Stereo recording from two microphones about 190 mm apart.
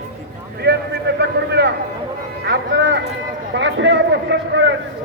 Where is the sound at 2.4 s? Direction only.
70° right (ahead or behind).